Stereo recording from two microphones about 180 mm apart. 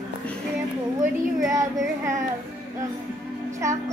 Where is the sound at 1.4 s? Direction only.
20° right (ahead or behind).